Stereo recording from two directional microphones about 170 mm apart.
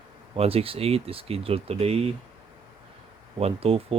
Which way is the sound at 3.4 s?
35° right (ahead or behind).